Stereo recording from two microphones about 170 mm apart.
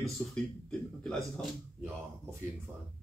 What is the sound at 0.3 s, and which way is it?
Speech, 5° left (ahead or behind).